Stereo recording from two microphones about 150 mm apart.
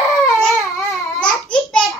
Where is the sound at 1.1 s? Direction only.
5° left (ahead or behind).